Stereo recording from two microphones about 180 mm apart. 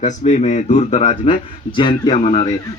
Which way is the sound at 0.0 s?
40° left (ahead or behind).